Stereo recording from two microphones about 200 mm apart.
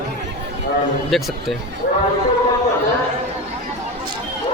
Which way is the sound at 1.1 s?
Centre (ahead or behind).